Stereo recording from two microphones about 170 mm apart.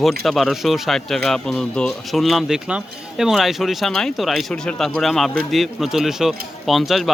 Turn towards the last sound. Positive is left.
turn(degrees=0)  # may be behind; listen again after turning